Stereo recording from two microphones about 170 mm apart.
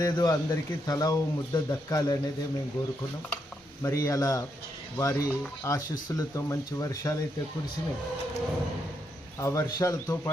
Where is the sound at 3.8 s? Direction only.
20° left (ahead or behind).